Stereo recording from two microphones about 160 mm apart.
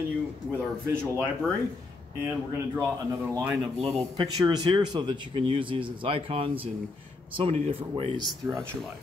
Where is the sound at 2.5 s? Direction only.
15° right (ahead or behind); by 8.2 s 35° right (ahead or behind).